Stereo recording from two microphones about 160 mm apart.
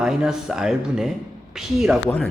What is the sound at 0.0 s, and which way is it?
A man's voice, 5° right (ahead or behind).